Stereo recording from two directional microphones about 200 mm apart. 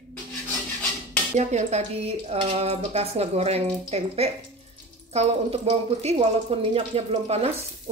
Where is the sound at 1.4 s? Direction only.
35° right (ahead or behind).